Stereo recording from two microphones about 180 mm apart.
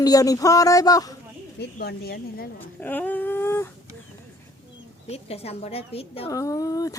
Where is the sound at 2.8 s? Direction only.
10° left (ahead or behind).